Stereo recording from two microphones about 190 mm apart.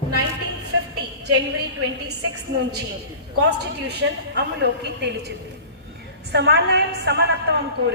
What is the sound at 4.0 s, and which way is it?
A woman's voice, 65° right (ahead or behind).